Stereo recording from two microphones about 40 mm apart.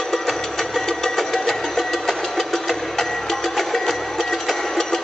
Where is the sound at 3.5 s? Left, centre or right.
Centre.